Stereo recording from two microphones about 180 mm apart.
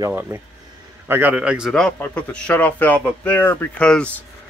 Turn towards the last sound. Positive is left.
turn(degrees=5)  # may be behind; listen again after turning